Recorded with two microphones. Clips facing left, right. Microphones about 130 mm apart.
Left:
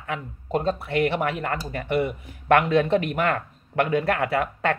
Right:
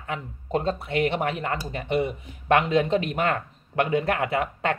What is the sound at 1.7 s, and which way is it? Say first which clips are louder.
Speech: left 1 dB; 20° right (ahead or behind).